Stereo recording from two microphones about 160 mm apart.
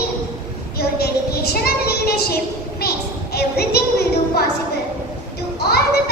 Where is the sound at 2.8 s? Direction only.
75° left (ahead or behind).